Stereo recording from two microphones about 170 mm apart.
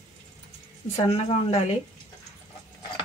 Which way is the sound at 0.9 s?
35° left (ahead or behind).